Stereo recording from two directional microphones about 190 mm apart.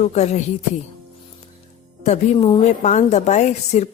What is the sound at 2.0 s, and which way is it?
Speech, 35° left (ahead or behind).